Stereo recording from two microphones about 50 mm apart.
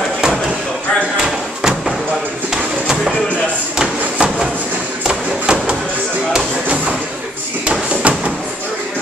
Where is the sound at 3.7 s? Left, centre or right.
Centre.